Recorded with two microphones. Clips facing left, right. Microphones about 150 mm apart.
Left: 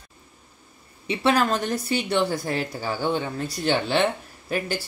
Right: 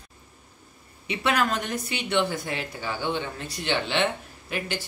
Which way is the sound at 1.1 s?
30° left (ahead or behind).